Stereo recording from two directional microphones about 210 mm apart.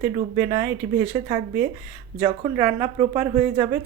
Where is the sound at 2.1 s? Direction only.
30° right (ahead or behind).